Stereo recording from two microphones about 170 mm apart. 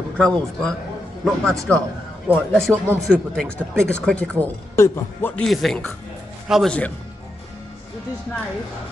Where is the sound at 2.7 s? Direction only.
10° right (ahead or behind).